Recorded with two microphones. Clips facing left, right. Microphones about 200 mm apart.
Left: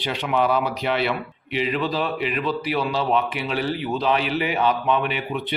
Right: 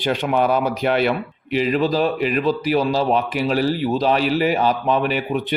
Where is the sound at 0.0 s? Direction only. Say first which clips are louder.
Right 4 dB; 45° right (ahead or behind).